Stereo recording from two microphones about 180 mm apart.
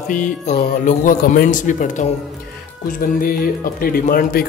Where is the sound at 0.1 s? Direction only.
45° left (ahead or behind).